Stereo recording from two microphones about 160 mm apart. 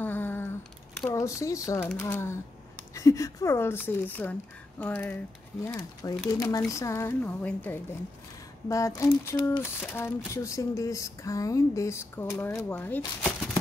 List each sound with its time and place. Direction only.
0.0 s a sound: 10° left (ahead or behind)
1.1 s speech: 20° left (ahead or behind)
5.7 s speech: 25° left (ahead or behind)